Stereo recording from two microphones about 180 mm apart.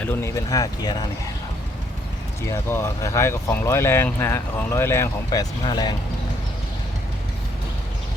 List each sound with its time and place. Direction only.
0.0 s speech: 15° left (ahead or behind)
2.5 s speech: 15° left (ahead or behind)